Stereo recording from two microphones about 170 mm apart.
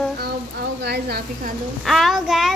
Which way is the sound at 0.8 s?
75° right (ahead or behind).